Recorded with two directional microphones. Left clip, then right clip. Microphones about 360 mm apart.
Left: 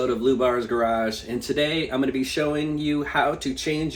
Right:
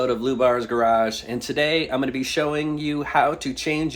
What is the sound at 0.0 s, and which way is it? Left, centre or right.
Speech, centre.